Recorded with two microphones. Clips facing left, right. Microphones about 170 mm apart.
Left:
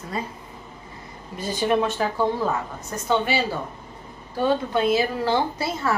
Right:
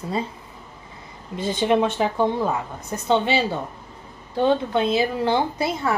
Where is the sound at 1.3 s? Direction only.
25° right (ahead or behind).